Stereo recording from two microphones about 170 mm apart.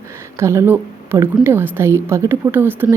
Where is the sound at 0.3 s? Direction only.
15° right (ahead or behind).